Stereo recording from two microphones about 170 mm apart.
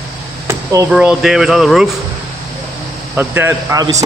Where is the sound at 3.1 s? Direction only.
10° right (ahead or behind).